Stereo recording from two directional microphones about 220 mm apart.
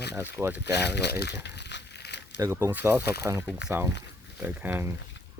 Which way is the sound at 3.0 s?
50° left (ahead or behind).